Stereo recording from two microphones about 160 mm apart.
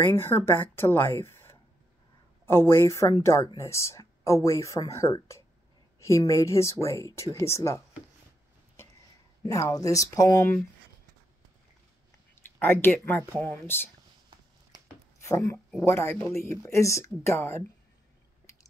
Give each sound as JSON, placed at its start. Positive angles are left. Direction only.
{"t": 0.1, "sound": "speech", "side_deg": 15}
{"t": 9.5, "sound": "speech", "side_deg": 20}
{"t": 12.5, "sound": "speech", "side_deg": 15}
{"t": 14.3, "sound": "a sound", "side_deg": -30}
{"t": 15.1, "sound": "speech", "side_deg": 20}